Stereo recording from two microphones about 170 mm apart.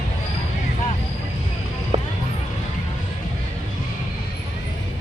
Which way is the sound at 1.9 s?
30° right (ahead or behind).